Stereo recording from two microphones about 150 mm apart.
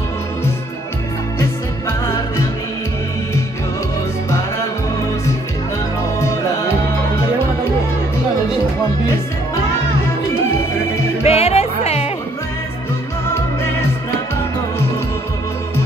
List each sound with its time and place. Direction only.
1.4 s music: 15° left (ahead or behind)
11.2 s music: 45° left (ahead or behind)